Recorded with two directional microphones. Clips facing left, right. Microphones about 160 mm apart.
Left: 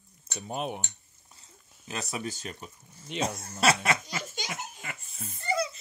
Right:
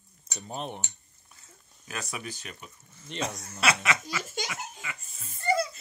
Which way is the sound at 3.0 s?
5° left (ahead or behind).